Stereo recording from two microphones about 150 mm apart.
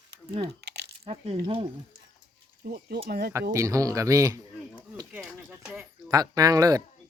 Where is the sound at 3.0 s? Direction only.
75° right (ahead or behind).